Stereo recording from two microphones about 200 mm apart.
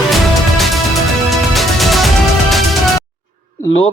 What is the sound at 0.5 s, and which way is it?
Music, centre (ahead or behind).